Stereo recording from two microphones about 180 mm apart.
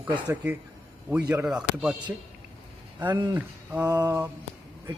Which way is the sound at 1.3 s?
10° right (ahead or behind).